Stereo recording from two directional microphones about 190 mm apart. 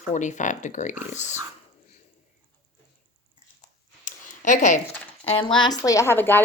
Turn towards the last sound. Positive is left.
turn(degrees=10)  # may be behind; listen again after turning